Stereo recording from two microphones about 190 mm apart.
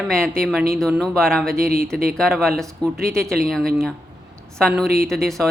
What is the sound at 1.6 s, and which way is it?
Speech, 50° right (ahead or behind).